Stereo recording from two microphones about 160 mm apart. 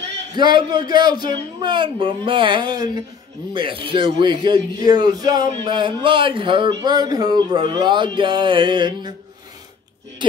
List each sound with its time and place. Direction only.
0.4 s speech: 30° right (ahead or behind)